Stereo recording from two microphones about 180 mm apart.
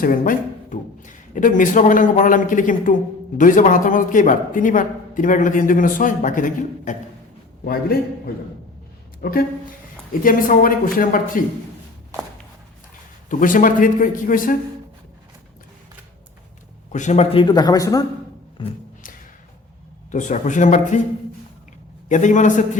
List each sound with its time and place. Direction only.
0.0 s a man's voice: 50° left (ahead or behind)
9.2 s a man's voice: 55° left (ahead or behind)
13.2 s speech: 45° left (ahead or behind)
16.9 s speech: 40° left (ahead or behind)
17.4 s speech: 25° left (ahead or behind)
20.1 s speech: 45° left (ahead or behind)
22.1 s speech: 40° left (ahead or behind)